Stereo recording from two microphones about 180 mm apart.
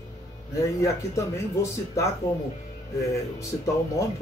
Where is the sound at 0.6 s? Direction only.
15° left (ahead or behind).